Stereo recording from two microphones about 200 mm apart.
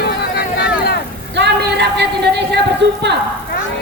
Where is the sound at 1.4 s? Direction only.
60° right (ahead or behind).